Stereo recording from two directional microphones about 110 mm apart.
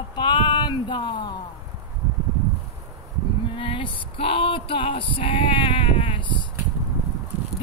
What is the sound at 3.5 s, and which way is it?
Male singing, 50° left (ahead or behind).